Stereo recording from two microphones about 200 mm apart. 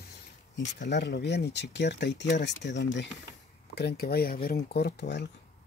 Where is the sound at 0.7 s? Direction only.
60° left (ahead or behind).